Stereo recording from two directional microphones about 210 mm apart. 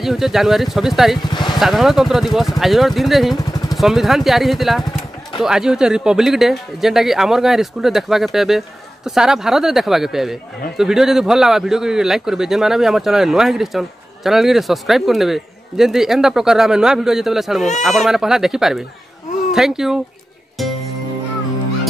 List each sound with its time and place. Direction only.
0.0 s a man's voice: centre (ahead or behind)
1.2 s speech: 20° left (ahead or behind)
1.6 s a man's voice: centre (ahead or behind)
20.6 s music: centre (ahead or behind)